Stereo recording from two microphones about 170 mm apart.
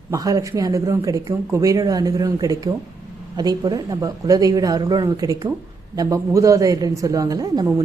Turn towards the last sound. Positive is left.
turn(degrees=-20)  # may be behind; listen again after turning